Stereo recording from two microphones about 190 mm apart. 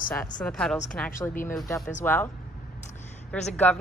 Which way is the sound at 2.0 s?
10° left (ahead or behind).